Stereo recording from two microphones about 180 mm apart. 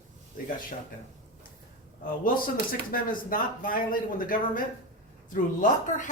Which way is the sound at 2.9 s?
50° left (ahead or behind).